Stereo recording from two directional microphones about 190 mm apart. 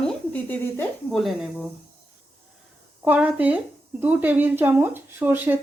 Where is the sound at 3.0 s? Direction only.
5° right (ahead or behind).